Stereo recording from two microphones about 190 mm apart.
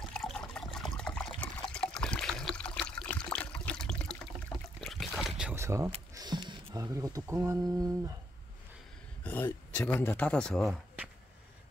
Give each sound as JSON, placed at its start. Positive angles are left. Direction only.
{"t": 0.1, "sound": "liquid", "side_deg": 5}
{"t": 4.7, "sound": "boat", "side_deg": 0}
{"t": 5.6, "sound": "a sound", "side_deg": -15}
{"t": 6.1, "sound": "speech", "side_deg": -20}
{"t": 9.2, "sound": "speech", "side_deg": 10}